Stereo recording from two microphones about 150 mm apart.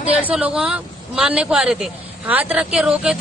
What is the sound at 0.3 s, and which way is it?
A man's voice, 10° right (ahead or behind).